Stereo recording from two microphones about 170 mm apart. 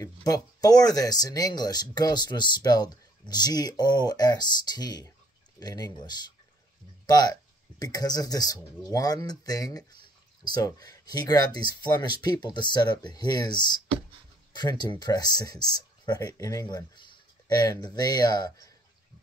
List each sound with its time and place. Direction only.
0.0 s speech: 20° left (ahead or behind)